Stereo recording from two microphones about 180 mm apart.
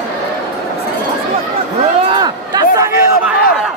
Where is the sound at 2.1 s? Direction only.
25° right (ahead or behind).